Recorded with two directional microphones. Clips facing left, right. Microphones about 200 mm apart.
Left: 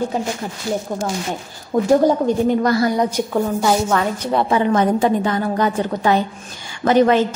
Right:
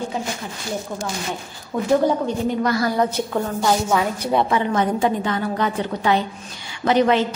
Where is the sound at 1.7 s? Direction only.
40° left (ahead or behind).